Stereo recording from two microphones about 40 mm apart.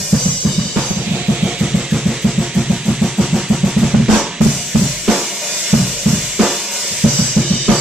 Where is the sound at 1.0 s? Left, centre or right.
Right.